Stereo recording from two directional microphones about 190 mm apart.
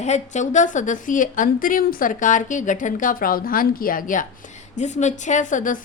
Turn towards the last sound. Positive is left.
turn(degrees=40)  # may be behind; listen again after turning